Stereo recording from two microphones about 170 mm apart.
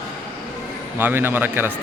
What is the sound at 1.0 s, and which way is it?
Speech, 10° right (ahead or behind).